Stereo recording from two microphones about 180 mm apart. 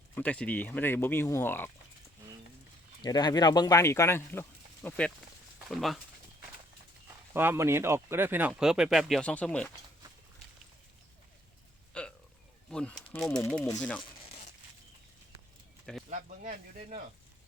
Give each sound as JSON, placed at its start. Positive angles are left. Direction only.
{"t": 0.2, "sound": "speech", "side_deg": 10}
{"t": 3.0, "sound": "speech", "side_deg": 25}
{"t": 7.3, "sound": "speech", "side_deg": -15}
{"t": 11.9, "sound": "a sound", "side_deg": 5}
{"t": 12.7, "sound": "speech", "side_deg": 5}
{"t": 14.0, "sound": "crumpling", "side_deg": 30}
{"t": 16.0, "sound": "speech", "side_deg": -45}